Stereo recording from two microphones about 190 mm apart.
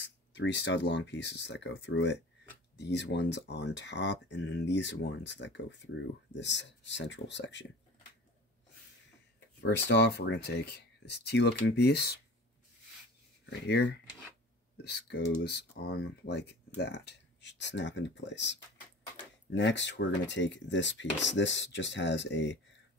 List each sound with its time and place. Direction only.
0.0 s speech: 70° left (ahead or behind)
9.6 s speech: 65° left (ahead or behind)
13.5 s speech: 65° left (ahead or behind)